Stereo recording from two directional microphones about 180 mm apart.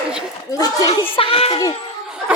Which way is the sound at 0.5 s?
20° left (ahead or behind).